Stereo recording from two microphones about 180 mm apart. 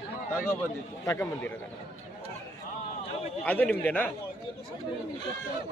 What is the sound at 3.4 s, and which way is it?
Speech, 10° left (ahead or behind).